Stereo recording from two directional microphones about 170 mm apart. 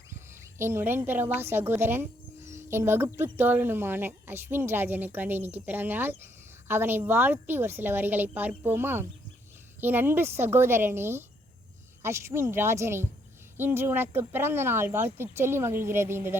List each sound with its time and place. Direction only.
0.6 s a woman's voice: 15° right (ahead or behind)